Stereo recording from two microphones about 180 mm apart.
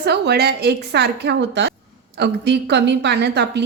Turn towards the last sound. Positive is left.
turn(degrees=-70)  # may be behind; listen again after turning